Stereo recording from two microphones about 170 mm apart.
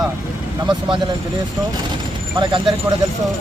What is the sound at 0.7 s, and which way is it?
Speech, 30° right (ahead or behind).